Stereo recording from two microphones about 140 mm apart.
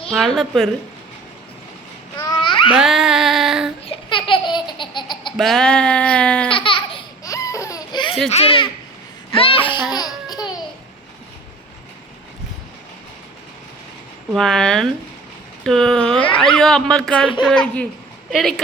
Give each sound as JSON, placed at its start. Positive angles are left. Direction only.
{"t": 0.1, "sound": "speech", "side_deg": 0}
{"t": 2.1, "sound": "babbling", "side_deg": 30}
{"t": 2.7, "sound": "female singing", "side_deg": -5}
{"t": 3.8, "sound": "baby laughter", "side_deg": 40}
{"t": 5.4, "sound": "a sound", "side_deg": 5}
{"t": 6.5, "sound": "laughter", "side_deg": 40}
{"t": 7.3, "sound": "baby cry", "side_deg": 25}
{"t": 8.3, "sound": "a child's voice", "side_deg": 45}
{"t": 9.3, "sound": "a sound", "side_deg": 40}
{"t": 9.9, "sound": "laughter", "side_deg": 30}
{"t": 14.3, "sound": "speech", "side_deg": 5}